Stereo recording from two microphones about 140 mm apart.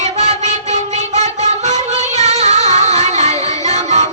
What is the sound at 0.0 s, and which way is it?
Music, 50° right (ahead or behind).